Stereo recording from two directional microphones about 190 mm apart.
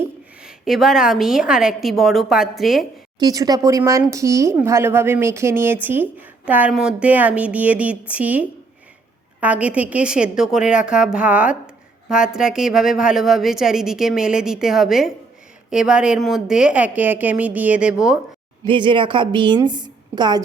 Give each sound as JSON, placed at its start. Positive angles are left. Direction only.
{"t": 0.0, "sound": "a woman's voice", "side_deg": 0}
{"t": 3.2, "sound": "a woman's voice", "side_deg": -20}
{"t": 18.6, "sound": "a woman's voice", "side_deg": -25}